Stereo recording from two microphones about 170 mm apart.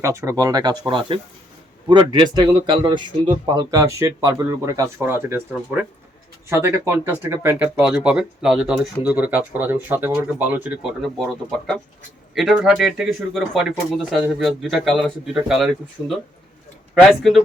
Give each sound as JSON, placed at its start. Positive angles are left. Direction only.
{"t": 0.0, "sound": "speech", "side_deg": -15}